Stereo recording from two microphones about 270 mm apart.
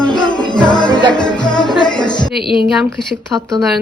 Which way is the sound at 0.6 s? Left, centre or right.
Centre.